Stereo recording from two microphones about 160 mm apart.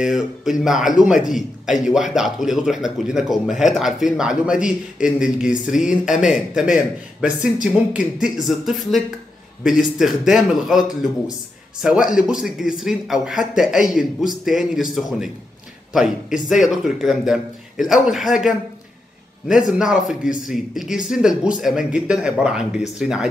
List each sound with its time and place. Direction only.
0.0 s speech: 5° right (ahead or behind)
19.8 s speech: 5° right (ahead or behind)